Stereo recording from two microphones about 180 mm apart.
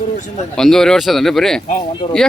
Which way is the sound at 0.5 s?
5° left (ahead or behind).